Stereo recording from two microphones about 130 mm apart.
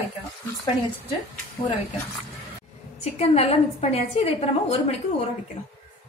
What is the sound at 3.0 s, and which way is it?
A woman's voice, 55° left (ahead or behind).